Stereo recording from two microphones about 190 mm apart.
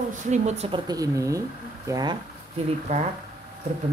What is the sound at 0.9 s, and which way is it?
Speech, 15° right (ahead or behind).